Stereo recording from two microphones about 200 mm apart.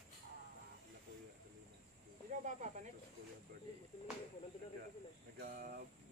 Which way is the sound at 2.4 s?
35° right (ahead or behind).